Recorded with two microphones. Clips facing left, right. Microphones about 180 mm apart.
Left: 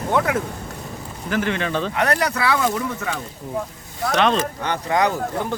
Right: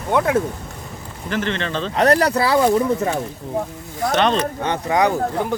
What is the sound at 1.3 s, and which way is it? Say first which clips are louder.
Speech: left 1 dB; 10° left (ahead or behind).